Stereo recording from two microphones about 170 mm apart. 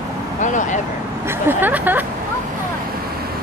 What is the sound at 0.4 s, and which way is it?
Speech, 45° left (ahead or behind).